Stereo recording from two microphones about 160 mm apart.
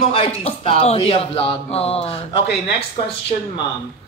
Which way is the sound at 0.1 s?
35° left (ahead or behind).